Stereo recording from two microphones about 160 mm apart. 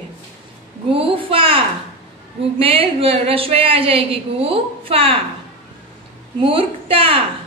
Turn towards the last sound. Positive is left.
turn(degrees=-35)  # may be behind; listen again after turning